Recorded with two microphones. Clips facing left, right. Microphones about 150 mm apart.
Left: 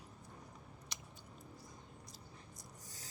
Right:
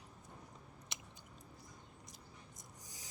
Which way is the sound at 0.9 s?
20° right (ahead or behind).